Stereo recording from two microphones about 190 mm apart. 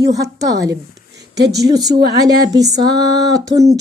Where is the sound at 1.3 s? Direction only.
60° right (ahead or behind).